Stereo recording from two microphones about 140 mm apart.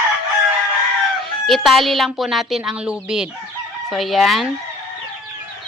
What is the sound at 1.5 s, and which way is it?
Speech, centre (ahead or behind).